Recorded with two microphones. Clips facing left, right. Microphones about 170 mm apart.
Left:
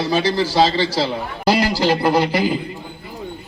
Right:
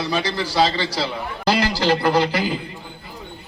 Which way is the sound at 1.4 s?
10° left (ahead or behind).